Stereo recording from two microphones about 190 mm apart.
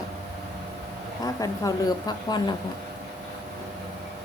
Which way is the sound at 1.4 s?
20° left (ahead or behind).